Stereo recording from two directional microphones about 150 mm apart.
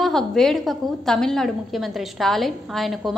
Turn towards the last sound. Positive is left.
turn(degrees=0)  # may be behind; listen again after turning